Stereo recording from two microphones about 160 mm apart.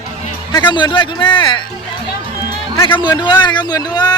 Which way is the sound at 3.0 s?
30° left (ahead or behind).